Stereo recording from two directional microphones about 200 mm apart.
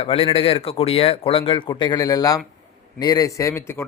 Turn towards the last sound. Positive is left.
turn(degrees=15)  # may be behind; listen again after turning